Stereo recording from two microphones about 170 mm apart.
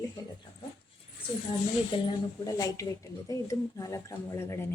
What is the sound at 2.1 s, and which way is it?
Speech, 20° left (ahead or behind).